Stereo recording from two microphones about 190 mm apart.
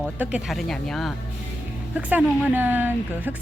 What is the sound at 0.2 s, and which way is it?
Speech, 5° right (ahead or behind).